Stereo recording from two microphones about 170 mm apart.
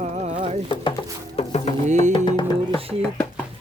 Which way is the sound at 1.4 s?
40° left (ahead or behind).